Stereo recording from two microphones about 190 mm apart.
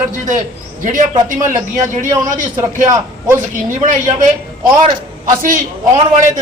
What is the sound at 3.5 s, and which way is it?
Speech, 45° right (ahead or behind).